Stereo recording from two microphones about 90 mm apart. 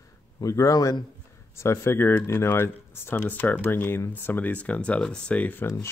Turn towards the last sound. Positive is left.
turn(degrees=15)  # may be behind; listen again after turning